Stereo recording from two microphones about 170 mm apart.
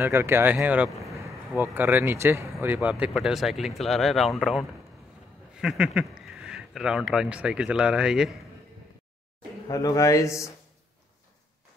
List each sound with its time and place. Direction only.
0.0 s speech: 15° right (ahead or behind)
9.7 s speech: 20° left (ahead or behind)